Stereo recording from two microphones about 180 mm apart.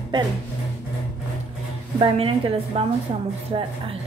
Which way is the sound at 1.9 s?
30° right (ahead or behind).